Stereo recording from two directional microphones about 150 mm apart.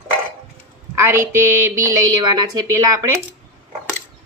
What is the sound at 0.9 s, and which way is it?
Speech, 15° right (ahead or behind).